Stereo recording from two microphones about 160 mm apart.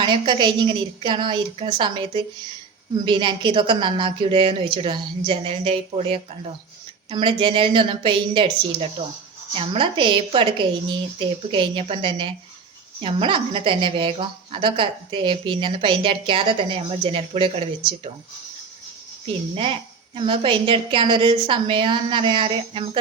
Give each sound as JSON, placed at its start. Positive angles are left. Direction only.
{"t": 0.0, "sound": "a woman's voice", "side_deg": -30}
{"t": 19.5, "sound": "a woman's voice", "side_deg": -35}